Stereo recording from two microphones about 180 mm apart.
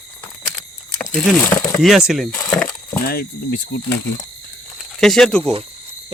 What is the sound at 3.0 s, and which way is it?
Speech, 60° left (ahead or behind).